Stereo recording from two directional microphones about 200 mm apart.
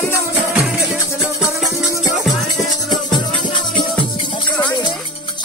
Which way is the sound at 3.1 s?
25° left (ahead or behind).